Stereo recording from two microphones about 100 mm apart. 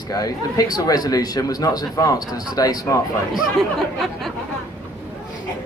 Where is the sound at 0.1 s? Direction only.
40° left (ahead or behind).